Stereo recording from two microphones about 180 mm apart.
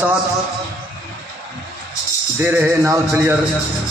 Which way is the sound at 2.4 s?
10° right (ahead or behind).